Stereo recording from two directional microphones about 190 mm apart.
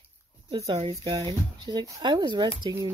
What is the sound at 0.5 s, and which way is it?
Speech, 30° right (ahead or behind).